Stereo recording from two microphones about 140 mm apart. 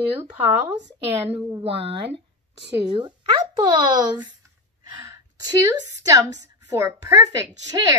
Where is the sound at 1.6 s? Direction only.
45° right (ahead or behind).